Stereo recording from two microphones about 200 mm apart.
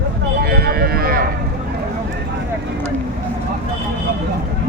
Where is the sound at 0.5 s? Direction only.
50° right (ahead or behind).